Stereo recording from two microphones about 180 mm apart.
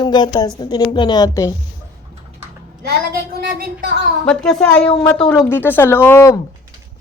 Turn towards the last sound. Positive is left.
turn(degrees=15)  # may be behind; listen again after turning